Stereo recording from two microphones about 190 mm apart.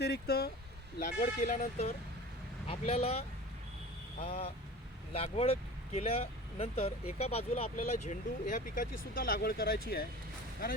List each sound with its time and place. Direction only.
0.0 s speech: 55° left (ahead or behind)
1.0 s speech: 40° left (ahead or behind)